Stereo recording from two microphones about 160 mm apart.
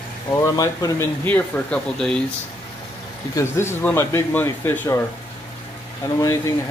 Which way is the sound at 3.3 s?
15° left (ahead or behind).